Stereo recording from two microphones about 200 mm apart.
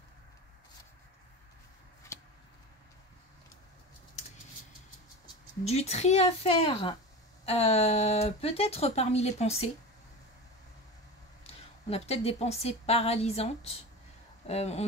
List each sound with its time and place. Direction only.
2.1 s vehicle: 15° left (ahead or behind)
5.7 s speech: 30° left (ahead or behind)
11.4 s a woman's voice: 30° left (ahead or behind)
14.5 s speech: 30° left (ahead or behind)